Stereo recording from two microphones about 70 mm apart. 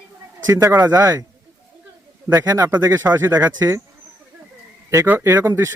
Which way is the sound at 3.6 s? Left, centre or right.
Right.